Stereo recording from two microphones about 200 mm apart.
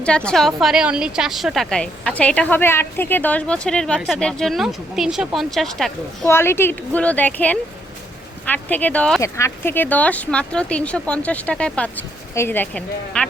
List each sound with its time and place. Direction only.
0.0 s a woman's voice: 5° left (ahead or behind)
6.2 s speech: 10° left (ahead or behind)